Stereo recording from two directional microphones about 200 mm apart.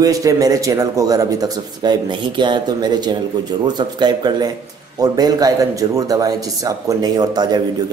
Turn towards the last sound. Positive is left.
turn(degrees=-20)  # may be behind; listen again after turning